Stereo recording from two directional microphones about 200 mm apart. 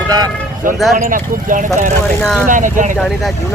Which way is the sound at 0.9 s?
40° right (ahead or behind).